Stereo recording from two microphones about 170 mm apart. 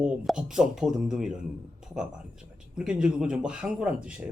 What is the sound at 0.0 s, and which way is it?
Speech, 5° right (ahead or behind).